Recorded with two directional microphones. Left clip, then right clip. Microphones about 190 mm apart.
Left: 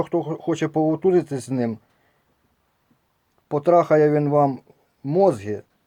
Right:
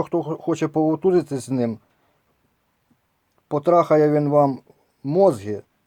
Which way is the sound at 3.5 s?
20° right (ahead or behind).